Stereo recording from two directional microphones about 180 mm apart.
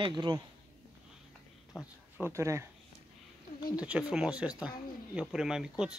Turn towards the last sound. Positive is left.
turn(degrees=-5)  # may be behind; listen again after turning